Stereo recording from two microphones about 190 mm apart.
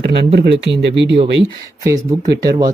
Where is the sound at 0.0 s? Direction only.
65° right (ahead or behind).